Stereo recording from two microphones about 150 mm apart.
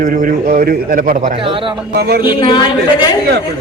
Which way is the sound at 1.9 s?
90° right.